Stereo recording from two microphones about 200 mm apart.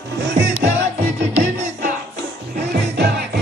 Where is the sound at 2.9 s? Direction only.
55° right (ahead or behind).